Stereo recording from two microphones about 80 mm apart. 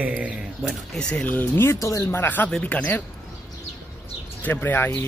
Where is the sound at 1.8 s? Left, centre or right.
Left.